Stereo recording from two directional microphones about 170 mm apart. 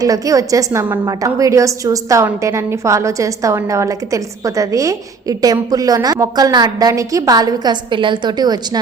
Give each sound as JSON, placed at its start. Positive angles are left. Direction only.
{"t": 0.0, "sound": "a woman's voice", "side_deg": -20}